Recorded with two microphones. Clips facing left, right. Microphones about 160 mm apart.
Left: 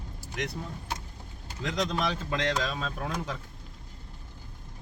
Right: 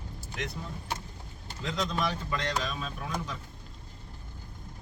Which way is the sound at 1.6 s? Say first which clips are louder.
Left 2 dB; 80° left.